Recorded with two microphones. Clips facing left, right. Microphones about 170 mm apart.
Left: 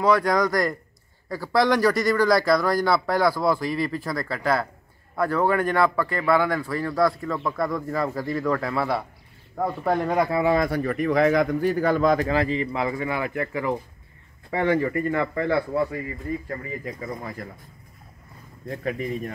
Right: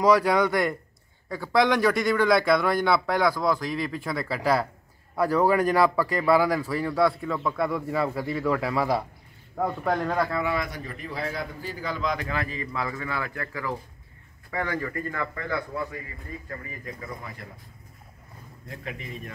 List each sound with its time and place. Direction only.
0.0 s speech: 5° right (ahead or behind)
9.6 s speech: 5° left (ahead or behind)
10.1 s speech: 20° left (ahead or behind)
10.4 s speech: 40° left (ahead or behind)
10.7 s a man's voice: 65° left (ahead or behind)
12.3 s speech: 30° left (ahead or behind)
18.7 s speech: 40° left (ahead or behind)